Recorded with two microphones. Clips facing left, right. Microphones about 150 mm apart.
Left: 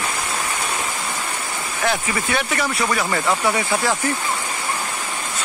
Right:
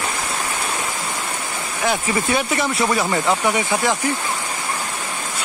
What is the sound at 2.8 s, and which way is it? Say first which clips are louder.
Speech: right 2 dB; 15° right (ahead or behind).